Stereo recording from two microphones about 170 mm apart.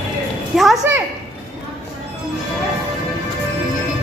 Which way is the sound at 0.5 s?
5° right (ahead or behind).